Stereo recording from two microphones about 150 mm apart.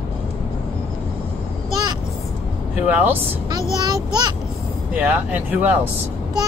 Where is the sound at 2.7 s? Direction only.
10° right (ahead or behind).